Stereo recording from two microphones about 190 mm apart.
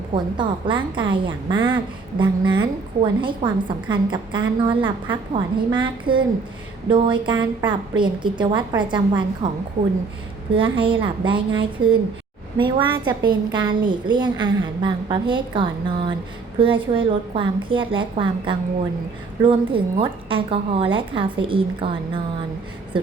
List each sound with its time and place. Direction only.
0.1 s a woman's voice: 25° right (ahead or behind)
10.5 s a woman's voice: 25° right (ahead or behind)